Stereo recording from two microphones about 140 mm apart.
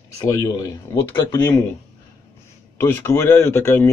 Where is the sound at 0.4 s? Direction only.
25° left (ahead or behind).